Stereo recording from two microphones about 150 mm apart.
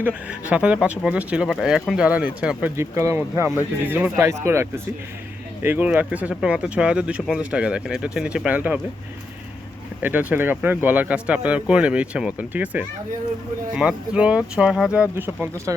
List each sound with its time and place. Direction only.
0.0 s speech: 10° right (ahead or behind)
10.0 s speech: 10° right (ahead or behind)